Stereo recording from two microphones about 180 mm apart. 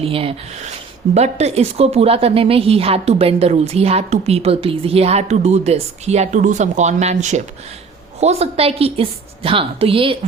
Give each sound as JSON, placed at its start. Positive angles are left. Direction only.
{"t": 0.0, "sound": "a woman's voice", "side_deg": -30}